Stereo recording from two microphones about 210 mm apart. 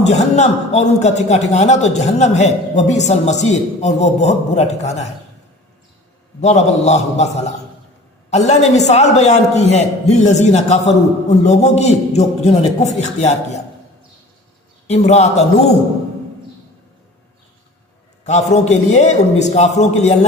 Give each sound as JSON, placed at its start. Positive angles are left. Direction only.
{"t": 0.0, "sound": "a man's voice", "side_deg": 35}
{"t": 6.4, "sound": "a man's voice", "side_deg": 35}
{"t": 14.8, "sound": "a man's voice", "side_deg": 30}
{"t": 18.3, "sound": "a man's voice", "side_deg": 35}